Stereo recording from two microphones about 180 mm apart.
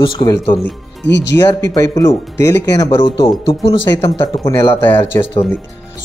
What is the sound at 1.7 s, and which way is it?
Speech, 20° left (ahead or behind).